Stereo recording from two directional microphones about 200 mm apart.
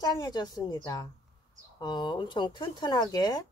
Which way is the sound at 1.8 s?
20° left (ahead or behind).